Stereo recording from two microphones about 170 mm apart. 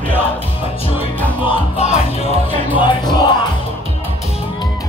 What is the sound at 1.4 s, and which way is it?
Music, 35° left (ahead or behind).